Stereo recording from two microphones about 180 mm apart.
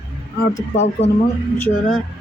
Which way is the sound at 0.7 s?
40° left (ahead or behind).